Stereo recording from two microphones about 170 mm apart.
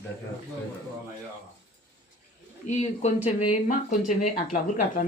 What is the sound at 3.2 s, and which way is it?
Speech, 40° left (ahead or behind).